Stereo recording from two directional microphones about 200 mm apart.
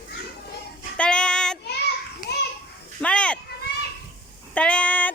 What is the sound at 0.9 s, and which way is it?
Child singing, 5° left (ahead or behind).